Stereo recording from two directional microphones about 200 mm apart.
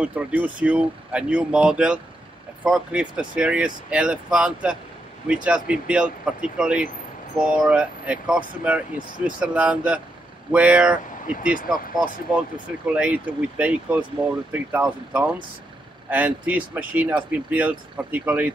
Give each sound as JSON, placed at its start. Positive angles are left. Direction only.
{"t": 0.0, "sound": "speech", "side_deg": -5}
{"t": 11.2, "sound": "speech", "side_deg": 40}
{"t": 12.8, "sound": "speech", "side_deg": -5}